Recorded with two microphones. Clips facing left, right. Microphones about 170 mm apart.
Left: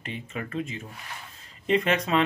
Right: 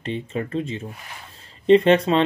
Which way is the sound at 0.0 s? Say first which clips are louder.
Right 8 dB; 30° right (ahead or behind).